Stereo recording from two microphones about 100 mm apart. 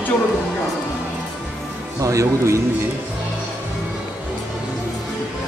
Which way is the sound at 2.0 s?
30° right (ahead or behind).